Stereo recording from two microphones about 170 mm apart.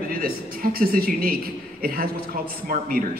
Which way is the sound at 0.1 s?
60° right (ahead or behind).